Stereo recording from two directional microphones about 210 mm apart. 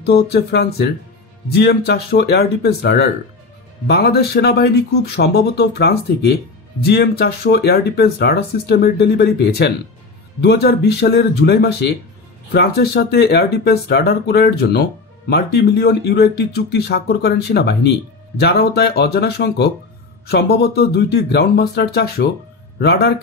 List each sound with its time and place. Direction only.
0.0 s speech: 50° left (ahead or behind)